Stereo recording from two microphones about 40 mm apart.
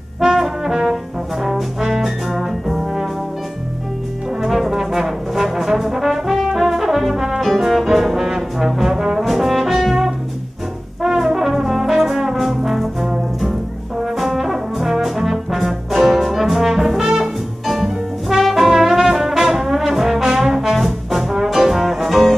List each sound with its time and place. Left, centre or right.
0.2 s trombone: centre
1.4 s brass instrument: centre
4.4 s brass instrument: centre
14.0 s brass instrument: centre